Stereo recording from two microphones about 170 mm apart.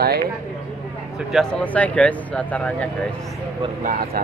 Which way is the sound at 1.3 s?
5° left (ahead or behind).